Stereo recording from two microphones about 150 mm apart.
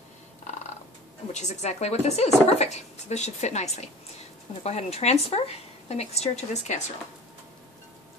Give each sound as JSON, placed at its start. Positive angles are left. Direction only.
{"t": 1.3, "sound": "a woman's voice", "side_deg": 50}